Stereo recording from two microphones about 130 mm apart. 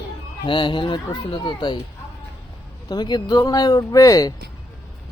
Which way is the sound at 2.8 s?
35° left (ahead or behind).